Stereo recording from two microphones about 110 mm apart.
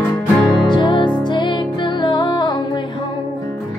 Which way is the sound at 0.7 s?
45° left (ahead or behind).